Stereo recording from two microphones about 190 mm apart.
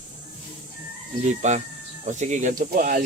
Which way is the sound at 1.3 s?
40° right (ahead or behind).